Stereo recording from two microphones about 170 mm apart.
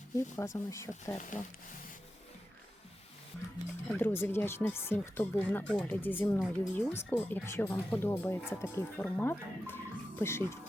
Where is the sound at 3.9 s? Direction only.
10° left (ahead or behind).